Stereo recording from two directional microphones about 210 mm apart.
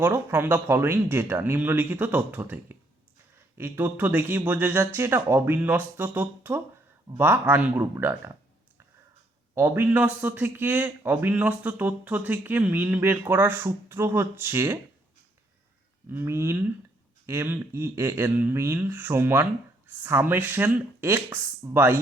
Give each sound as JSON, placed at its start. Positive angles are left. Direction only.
{"t": 0.0, "sound": "speech", "side_deg": -10}
{"t": 9.6, "sound": "speech", "side_deg": -10}
{"t": 16.1, "sound": "speech", "side_deg": -10}